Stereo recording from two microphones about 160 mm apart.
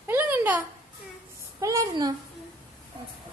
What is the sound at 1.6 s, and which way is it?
Speech, 20° right (ahead or behind).